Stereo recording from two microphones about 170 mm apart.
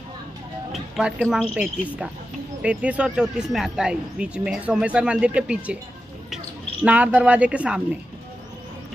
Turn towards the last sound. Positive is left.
turn(degrees=-5)  # may be behind; listen again after turning